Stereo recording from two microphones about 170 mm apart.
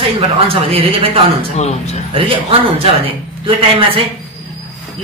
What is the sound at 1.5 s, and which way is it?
Speech, 40° left (ahead or behind).